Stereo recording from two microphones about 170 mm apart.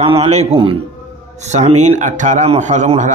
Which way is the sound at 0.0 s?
35° right (ahead or behind).